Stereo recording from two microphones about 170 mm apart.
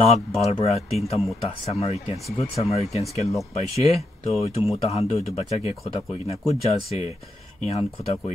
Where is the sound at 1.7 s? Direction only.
35° left (ahead or behind).